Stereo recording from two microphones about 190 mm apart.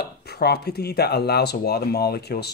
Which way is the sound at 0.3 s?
60° left (ahead or behind).